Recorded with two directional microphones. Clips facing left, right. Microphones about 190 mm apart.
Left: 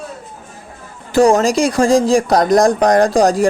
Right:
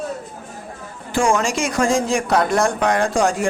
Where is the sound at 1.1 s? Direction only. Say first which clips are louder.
Left 7 dB; 35° left (ahead or behind).